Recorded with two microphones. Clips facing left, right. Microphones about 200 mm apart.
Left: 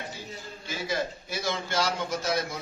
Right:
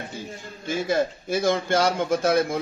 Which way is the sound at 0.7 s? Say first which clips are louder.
Right 8 dB; 50° right (ahead or behind).